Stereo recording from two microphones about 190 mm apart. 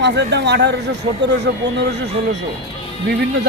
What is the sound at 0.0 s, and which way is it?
A man's voice, 65° right (ahead or behind).